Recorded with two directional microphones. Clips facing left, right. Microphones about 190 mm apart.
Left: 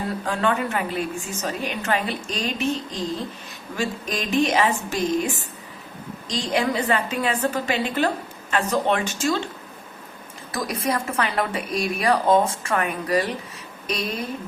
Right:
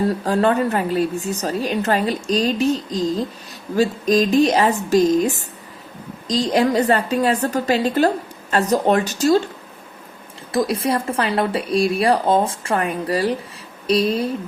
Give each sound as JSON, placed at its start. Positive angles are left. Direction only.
{"t": 0.3, "sound": "a woman's voice", "side_deg": -35}
{"t": 10.5, "sound": "a woman's voice", "side_deg": -30}